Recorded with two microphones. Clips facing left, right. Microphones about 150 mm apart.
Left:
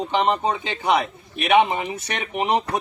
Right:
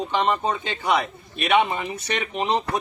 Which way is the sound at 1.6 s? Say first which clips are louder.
Left 3 dB; 20° left (ahead or behind).